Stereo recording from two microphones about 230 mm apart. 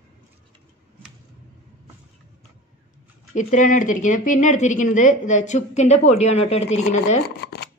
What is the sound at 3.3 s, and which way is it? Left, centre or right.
A woman's voice, left.